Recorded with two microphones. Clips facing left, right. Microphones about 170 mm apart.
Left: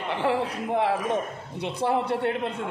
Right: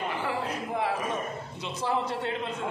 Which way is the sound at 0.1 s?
70° left (ahead or behind).